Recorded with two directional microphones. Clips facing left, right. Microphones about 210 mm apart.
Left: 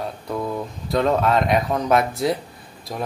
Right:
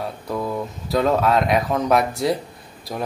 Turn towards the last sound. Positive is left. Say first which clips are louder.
# right 1 dB
turn(degrees=0)  # may be behind; listen again after turning